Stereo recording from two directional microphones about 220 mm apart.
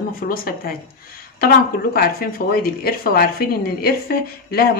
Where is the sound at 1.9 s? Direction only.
45° left (ahead or behind).